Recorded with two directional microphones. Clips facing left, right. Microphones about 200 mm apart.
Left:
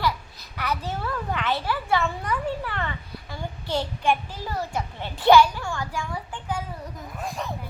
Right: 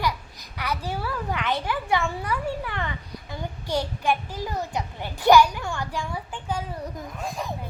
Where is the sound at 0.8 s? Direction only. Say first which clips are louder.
Even; 10° right (ahead or behind).